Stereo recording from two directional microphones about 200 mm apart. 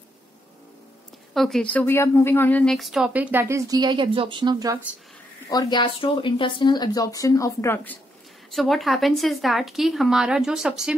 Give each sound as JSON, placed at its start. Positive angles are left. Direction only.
{"t": 1.3, "sound": "a woman's voice", "side_deg": 0}
{"t": 5.5, "sound": "a woman's voice", "side_deg": 20}